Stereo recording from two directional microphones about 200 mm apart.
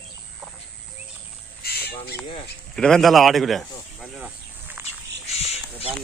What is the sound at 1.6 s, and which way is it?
Bird, 50° left (ahead or behind).